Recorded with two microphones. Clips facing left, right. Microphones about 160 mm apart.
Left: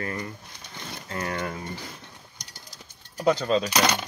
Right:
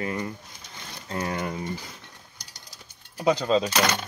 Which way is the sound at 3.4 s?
25° right (ahead or behind).